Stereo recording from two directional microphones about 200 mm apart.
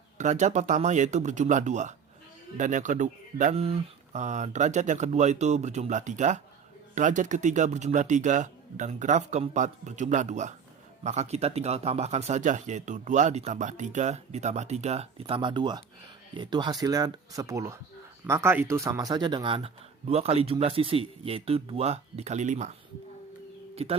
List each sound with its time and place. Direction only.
0.2 s speech: 35° right (ahead or behind)
23.7 s speech: 30° right (ahead or behind)